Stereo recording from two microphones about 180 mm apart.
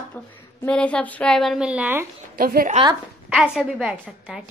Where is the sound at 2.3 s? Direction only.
55° right (ahead or behind).